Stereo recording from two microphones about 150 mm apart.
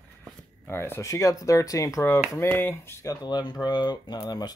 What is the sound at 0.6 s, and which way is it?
Speech, 15° left (ahead or behind).